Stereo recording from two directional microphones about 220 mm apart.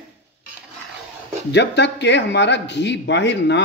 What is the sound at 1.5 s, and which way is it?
Speech, 50° left (ahead or behind).